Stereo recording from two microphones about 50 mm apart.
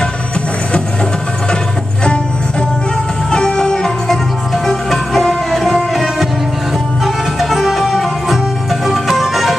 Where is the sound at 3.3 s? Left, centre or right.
Centre.